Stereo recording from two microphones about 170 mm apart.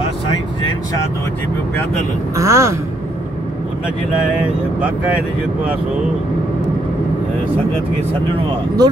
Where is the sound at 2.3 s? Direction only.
15° right (ahead or behind).